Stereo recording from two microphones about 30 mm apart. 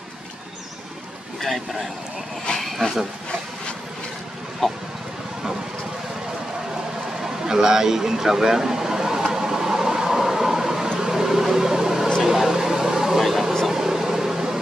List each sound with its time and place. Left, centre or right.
1.4 s speech: centre
4.6 s a sound: centre
7.2 s vehicle: centre
11.0 s a sound: centre
13.2 s vehicle: centre
13.7 s microwave oven: centre